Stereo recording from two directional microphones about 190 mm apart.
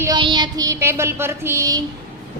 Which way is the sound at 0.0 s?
20° right (ahead or behind).